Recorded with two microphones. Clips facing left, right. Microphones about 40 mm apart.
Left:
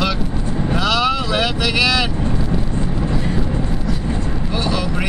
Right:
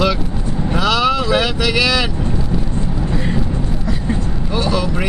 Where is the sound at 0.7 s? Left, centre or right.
Centre.